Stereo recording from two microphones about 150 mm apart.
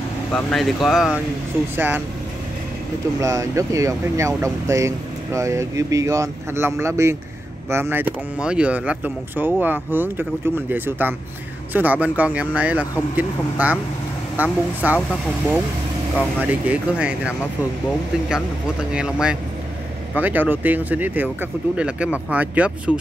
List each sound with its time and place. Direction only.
0.3 s speech: 5° left (ahead or behind)
1.8 s speech: 15° right (ahead or behind)
3.2 s speech: 20° right (ahead or behind)
15.0 s speech: 5° left (ahead or behind)
16.3 s speech: 10° right (ahead or behind)
18.3 s speech: 5° right (ahead or behind)